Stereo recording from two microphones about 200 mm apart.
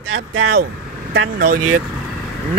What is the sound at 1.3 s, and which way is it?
Speech, 45° right (ahead or behind).